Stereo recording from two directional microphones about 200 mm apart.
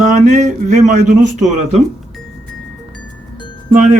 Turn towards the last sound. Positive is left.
turn(degrees=-40)  # may be behind; listen again after turning